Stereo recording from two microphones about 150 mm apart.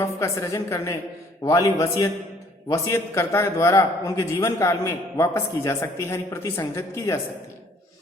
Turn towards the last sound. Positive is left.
turn(degrees=20)  # may be behind; listen again after turning